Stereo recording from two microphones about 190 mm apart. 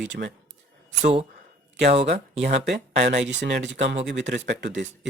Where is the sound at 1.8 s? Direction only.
35° right (ahead or behind).